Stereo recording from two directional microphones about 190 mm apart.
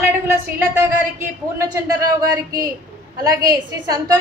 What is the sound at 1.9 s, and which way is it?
A woman's voice, 20° right (ahead or behind).